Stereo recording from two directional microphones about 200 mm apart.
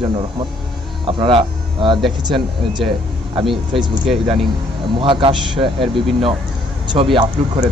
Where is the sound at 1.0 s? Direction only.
25° right (ahead or behind).